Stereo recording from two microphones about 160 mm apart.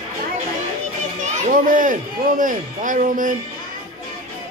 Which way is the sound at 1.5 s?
55° right (ahead or behind).